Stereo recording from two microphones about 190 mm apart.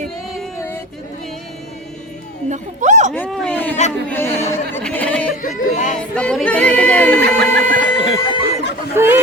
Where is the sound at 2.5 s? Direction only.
40° right (ahead or behind).